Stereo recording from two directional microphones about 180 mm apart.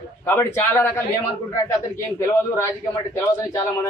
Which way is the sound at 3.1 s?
20° left (ahead or behind).